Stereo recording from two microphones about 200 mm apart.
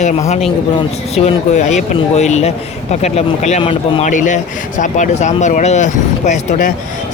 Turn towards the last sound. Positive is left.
turn(degrees=35)  # may be behind; listen again after turning